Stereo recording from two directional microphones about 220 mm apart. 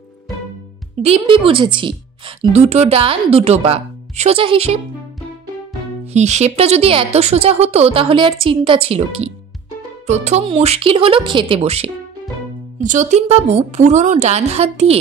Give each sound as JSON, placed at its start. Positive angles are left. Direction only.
{"t": 1.0, "sound": "a woman's voice", "side_deg": -25}
{"t": 6.1, "sound": "a woman's voice", "side_deg": -30}